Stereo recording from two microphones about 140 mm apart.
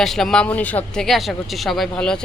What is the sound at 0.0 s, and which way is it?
Speech, 5° left (ahead or behind).